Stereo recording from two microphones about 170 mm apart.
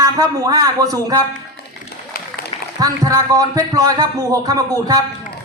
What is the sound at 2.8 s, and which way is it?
Speech, 20° right (ahead or behind).